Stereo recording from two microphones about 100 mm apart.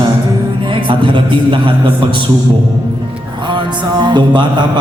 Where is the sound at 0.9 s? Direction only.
55° right (ahead or behind).